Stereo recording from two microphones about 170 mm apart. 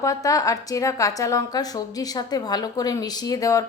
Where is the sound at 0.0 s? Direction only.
20° left (ahead or behind).